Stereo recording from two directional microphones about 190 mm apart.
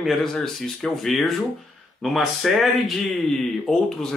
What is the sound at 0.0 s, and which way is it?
Speech, centre (ahead or behind).